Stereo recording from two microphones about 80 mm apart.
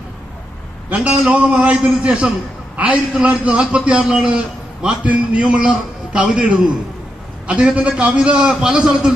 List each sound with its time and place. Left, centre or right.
0.8 s a man's voice: centre